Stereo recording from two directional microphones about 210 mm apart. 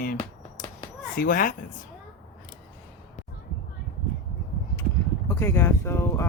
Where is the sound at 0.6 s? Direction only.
40° left (ahead or behind).